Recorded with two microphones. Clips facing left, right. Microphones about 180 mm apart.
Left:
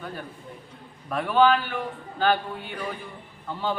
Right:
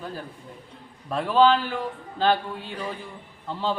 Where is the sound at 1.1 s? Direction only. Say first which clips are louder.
Right 1 dB; 25° right (ahead or behind).